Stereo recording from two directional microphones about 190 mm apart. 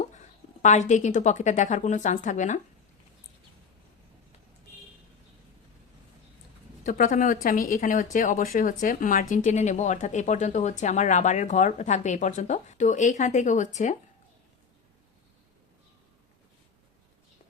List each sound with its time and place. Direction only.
0.0 s speech: 40° left (ahead or behind)
6.8 s speech: 45° left (ahead or behind)